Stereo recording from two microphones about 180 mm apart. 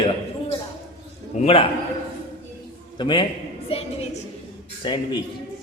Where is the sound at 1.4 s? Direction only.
30° left (ahead or behind).